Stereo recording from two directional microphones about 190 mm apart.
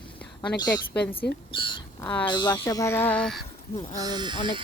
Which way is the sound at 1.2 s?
60° left (ahead or behind).